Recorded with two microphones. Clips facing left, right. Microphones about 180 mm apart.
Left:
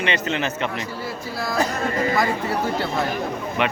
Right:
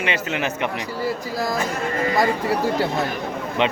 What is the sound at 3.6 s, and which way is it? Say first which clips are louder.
Speech: right 2 dB; 20° right (ahead or behind).